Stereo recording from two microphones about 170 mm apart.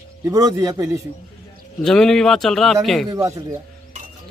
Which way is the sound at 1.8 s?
5° left (ahead or behind).